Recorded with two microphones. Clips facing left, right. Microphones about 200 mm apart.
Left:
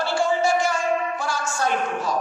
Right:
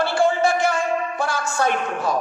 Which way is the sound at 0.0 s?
60° right (ahead or behind).